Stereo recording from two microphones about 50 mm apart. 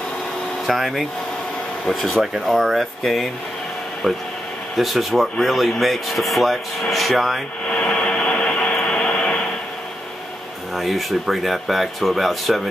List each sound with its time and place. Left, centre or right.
0.7 s speech: centre
4.7 s speech: centre
7.6 s a sound: left
10.8 s speech: centre